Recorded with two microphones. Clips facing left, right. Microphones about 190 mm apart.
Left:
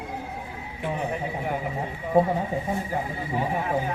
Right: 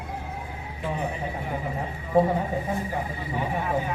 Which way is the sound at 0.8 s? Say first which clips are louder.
Left 1 dB; 60° left (ahead or behind).